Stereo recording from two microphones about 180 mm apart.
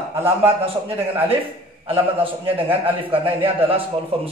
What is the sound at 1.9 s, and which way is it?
A man's voice, 30° right (ahead or behind).